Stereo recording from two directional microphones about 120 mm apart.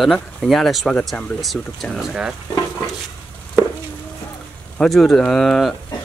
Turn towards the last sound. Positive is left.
turn(degrees=5)  # may be behind; listen again after turning